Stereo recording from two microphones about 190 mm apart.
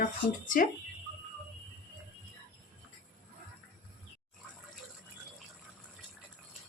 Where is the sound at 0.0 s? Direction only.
45° left (ahead or behind).